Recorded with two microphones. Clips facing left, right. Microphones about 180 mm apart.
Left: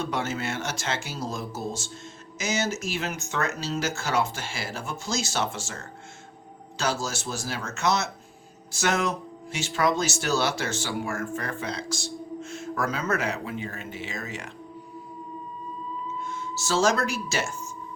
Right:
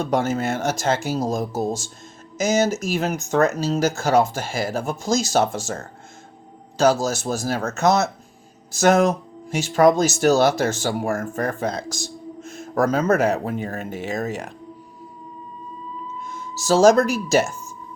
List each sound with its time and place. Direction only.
0.0 s speech: 45° right (ahead or behind)
16.6 s speech: 45° right (ahead or behind)